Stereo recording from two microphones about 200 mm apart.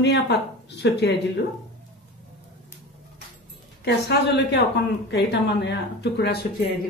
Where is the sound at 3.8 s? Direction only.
55° left (ahead or behind).